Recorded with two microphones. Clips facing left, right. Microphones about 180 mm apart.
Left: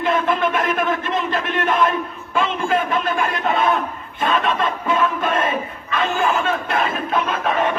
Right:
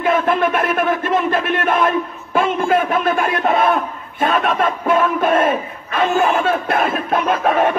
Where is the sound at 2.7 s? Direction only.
55° right (ahead or behind).